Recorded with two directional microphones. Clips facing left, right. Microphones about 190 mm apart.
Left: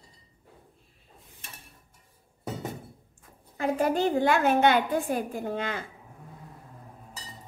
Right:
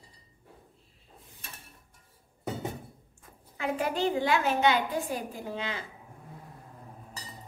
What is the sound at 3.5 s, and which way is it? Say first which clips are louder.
A woman's voice: left 5 dB; 40° left (ahead or behind).